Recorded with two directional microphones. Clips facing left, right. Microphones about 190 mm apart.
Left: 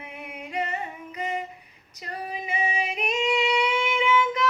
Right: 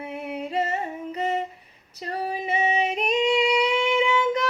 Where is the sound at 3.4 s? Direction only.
40° right (ahead or behind).